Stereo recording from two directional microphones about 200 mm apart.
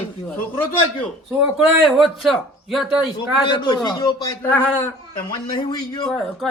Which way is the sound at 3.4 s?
20° left (ahead or behind).